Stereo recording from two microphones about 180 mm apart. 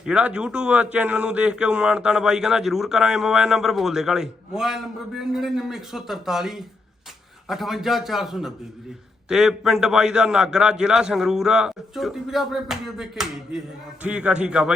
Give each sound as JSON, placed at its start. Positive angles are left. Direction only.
{"t": 0.0, "sound": "speech", "side_deg": -5}